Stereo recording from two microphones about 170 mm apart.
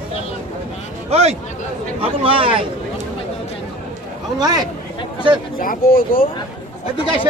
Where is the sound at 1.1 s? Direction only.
40° right (ahead or behind).